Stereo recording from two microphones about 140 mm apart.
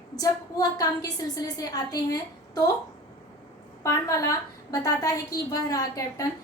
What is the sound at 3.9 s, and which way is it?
A woman's voice, 25° left (ahead or behind).